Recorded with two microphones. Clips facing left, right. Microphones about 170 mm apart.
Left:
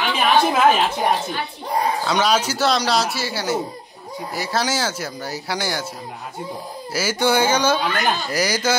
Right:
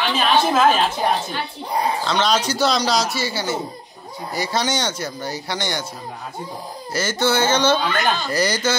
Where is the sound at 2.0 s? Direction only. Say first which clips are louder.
Left 1 dB; 10° left (ahead or behind).